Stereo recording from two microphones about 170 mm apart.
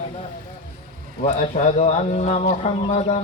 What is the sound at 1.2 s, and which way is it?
A man's voice, 45° left (ahead or behind).